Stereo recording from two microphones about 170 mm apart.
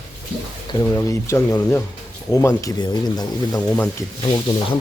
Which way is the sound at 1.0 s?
20° left (ahead or behind).